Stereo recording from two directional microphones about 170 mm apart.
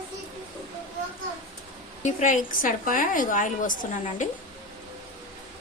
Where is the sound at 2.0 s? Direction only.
45° left (ahead or behind).